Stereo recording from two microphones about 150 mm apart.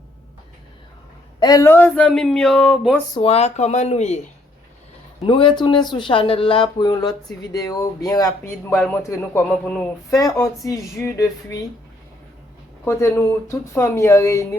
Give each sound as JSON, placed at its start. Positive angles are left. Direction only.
{"t": 1.4, "sound": "speech", "side_deg": 25}
{"t": 3.2, "sound": "speech", "side_deg": 45}
{"t": 5.2, "sound": "speech", "side_deg": 35}
{"t": 8.7, "sound": "a man's voice", "side_deg": 10}
{"t": 9.0, "sound": "speech", "side_deg": 20}
{"t": 12.8, "sound": "speech", "side_deg": 20}